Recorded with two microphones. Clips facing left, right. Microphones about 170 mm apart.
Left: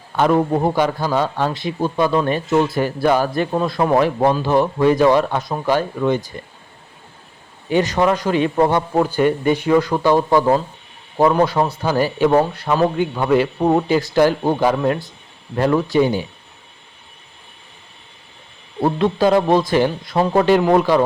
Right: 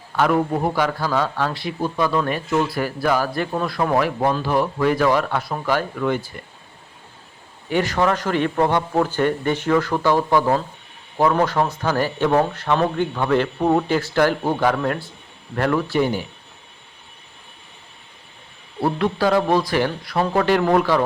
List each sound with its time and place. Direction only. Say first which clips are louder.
0.2 s a man's voice: left 3 dB; 25° left (ahead or behind)
7.7 s speech: left 3 dB; 20° left (ahead or behind)
18.8 s a man's voice: left 4 dB; 20° left (ahead or behind)